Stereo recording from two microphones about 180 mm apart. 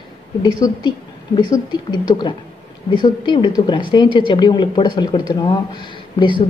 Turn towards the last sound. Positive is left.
turn(degrees=25)  # may be behind; listen again after turning